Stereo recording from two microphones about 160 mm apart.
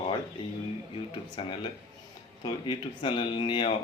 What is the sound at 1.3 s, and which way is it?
Speech, 30° left (ahead or behind).